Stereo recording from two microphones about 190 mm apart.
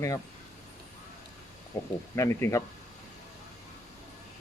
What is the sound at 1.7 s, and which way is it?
Speech, 15° left (ahead or behind).